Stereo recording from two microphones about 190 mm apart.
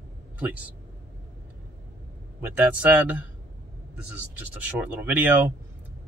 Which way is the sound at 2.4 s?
10° right (ahead or behind).